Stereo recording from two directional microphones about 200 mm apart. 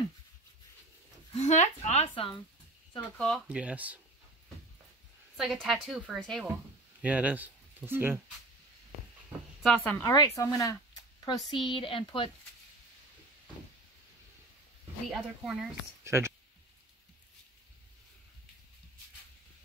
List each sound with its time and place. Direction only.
1.3 s a woman's voice: 35° left (ahead or behind)
3.2 s speech: centre (ahead or behind)
5.4 s speech: centre (ahead or behind)
9.6 s speech: centre (ahead or behind)
10.0 s speech: 15° left (ahead or behind)
15.0 s speech: centre (ahead or behind)
16.0 s a sound: 15° right (ahead or behind)